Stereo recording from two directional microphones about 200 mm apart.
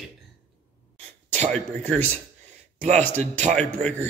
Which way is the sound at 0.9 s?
35° right (ahead or behind).